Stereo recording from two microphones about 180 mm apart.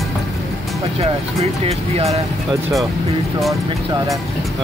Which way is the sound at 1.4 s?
35° right (ahead or behind).